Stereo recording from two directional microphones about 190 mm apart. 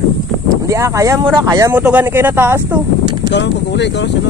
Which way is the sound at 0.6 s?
15° right (ahead or behind).